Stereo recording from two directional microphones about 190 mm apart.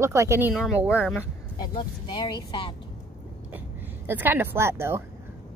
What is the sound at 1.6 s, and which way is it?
Speech, 25° left (ahead or behind).